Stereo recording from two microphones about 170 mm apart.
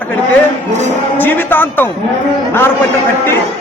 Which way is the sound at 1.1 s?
10° left (ahead or behind).